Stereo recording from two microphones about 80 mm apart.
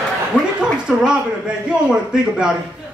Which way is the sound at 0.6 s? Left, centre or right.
Centre.